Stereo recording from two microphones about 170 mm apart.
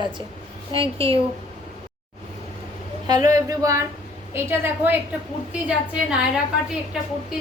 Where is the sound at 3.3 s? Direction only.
20° right (ahead or behind).